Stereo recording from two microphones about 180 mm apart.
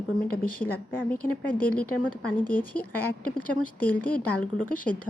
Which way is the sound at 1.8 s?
10° left (ahead or behind).